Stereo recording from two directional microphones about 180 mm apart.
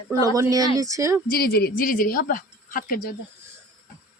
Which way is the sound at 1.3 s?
60° left (ahead or behind).